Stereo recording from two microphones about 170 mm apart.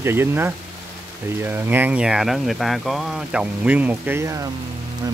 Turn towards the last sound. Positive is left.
turn(degrees=-20)  # may be behind; listen again after turning